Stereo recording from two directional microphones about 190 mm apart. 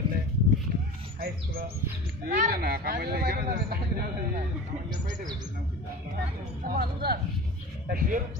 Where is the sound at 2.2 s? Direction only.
50° right (ahead or behind).